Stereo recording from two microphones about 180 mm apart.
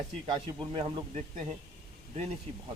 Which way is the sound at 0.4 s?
30° right (ahead or behind).